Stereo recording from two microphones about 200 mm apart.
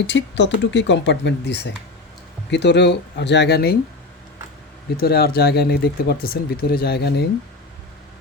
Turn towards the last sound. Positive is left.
turn(degrees=55)  # may be behind; listen again after turning